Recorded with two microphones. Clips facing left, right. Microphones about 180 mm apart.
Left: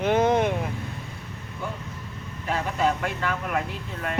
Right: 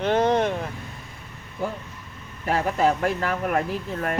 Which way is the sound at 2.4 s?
40° right (ahead or behind).